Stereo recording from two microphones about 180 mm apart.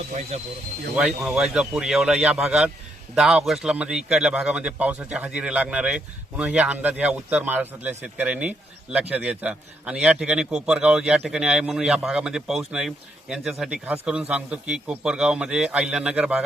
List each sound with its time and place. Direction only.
0.3 s speech: 35° right (ahead or behind)
0.9 s a man's voice: 5° right (ahead or behind)